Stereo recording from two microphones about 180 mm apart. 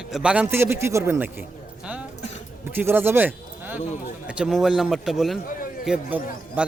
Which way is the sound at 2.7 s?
10° right (ahead or behind).